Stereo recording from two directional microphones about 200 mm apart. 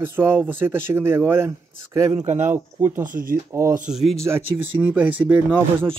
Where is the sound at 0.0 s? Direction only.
10° right (ahead or behind).